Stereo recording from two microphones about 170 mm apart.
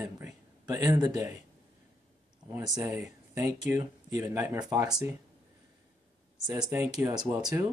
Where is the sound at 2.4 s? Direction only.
20° right (ahead or behind).